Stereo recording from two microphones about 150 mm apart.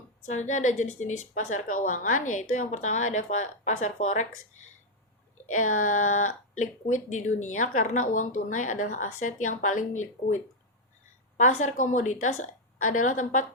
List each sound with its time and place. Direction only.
0.3 s a woman's voice: 55° left (ahead or behind)
5.5 s speech: 60° left (ahead or behind)
11.3 s speech: 55° left (ahead or behind)